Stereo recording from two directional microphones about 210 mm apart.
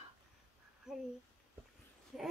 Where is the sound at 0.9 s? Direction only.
5° right (ahead or behind).